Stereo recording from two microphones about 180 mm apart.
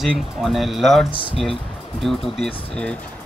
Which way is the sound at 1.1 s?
30° left (ahead or behind).